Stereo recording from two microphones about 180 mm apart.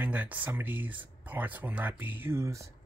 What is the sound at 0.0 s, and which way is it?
Speech, 10° right (ahead or behind).